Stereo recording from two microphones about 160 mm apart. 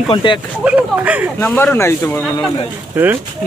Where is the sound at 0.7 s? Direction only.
10° right (ahead or behind).